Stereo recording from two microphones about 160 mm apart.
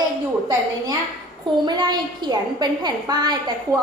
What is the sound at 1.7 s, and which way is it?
A child's voice, 25° right (ahead or behind).